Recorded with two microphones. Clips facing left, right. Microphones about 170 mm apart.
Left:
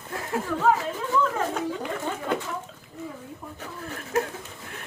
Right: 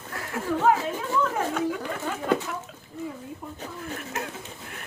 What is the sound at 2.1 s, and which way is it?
Speech, 20° left (ahead or behind).